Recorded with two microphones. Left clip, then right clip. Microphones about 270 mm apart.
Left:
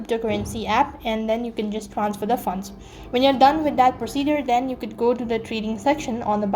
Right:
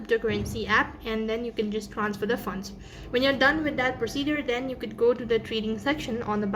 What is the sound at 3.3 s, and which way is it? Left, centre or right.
A woman's voice, centre.